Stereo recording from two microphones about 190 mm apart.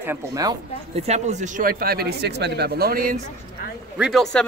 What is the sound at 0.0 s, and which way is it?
Speech, 15° right (ahead or behind).